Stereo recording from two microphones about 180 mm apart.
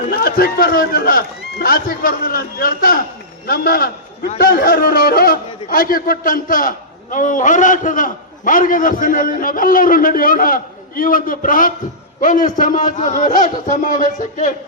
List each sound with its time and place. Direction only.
0.1 s a man's voice: 55° left (ahead or behind)